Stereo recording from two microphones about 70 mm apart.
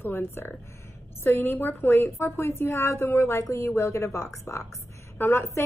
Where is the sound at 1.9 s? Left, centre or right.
Left.